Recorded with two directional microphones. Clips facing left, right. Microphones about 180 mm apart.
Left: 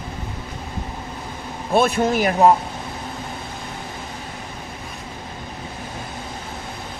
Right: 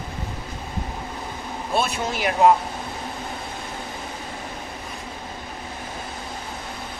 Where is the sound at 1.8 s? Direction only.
50° left (ahead or behind).